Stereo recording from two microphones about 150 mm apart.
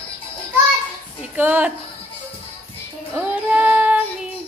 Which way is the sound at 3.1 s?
10° right (ahead or behind).